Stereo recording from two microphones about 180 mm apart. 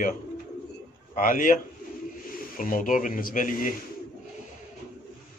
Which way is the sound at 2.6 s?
50° left (ahead or behind).